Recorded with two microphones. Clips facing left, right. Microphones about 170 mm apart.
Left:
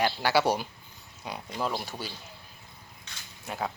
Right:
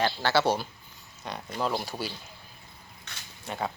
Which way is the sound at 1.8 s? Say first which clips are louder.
Right 3 dB; 10° right (ahead or behind).